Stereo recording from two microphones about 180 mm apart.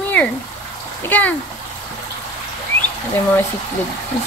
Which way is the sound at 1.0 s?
10° left (ahead or behind).